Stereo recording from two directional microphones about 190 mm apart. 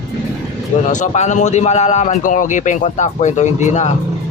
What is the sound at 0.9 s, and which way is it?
Speech, 40° left (ahead or behind).